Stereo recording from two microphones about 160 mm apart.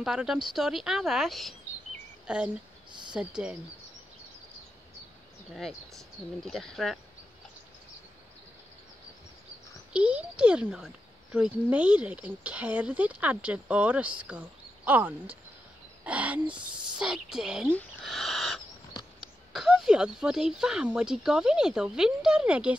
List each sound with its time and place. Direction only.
0.0 s speech: 5° right (ahead or behind)
5.5 s speech: centre (ahead or behind)
9.9 s speech: 5° right (ahead or behind)
17.6 s a sound: 5° left (ahead or behind)
19.5 s speech: centre (ahead or behind)